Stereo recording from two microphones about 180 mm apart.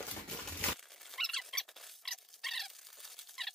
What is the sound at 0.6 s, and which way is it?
Dog, centre (ahead or behind).